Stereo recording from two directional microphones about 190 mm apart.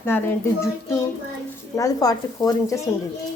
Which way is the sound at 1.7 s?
20° left (ahead or behind).